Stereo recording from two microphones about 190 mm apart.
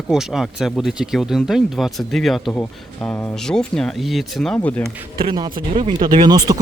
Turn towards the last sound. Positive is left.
turn(degrees=-20)  # may be behind; listen again after turning